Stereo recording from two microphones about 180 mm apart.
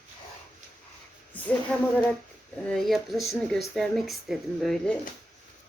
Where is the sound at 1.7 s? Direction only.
5° left (ahead or behind).